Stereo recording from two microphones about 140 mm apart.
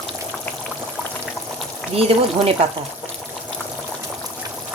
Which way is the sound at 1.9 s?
40° right (ahead or behind).